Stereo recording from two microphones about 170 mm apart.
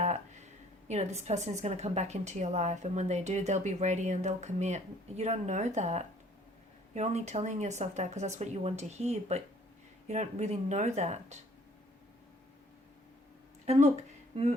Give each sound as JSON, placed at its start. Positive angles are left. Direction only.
{"t": 0.9, "sound": "a woman's voice", "side_deg": -40}
{"t": 13.7, "sound": "speech", "side_deg": -40}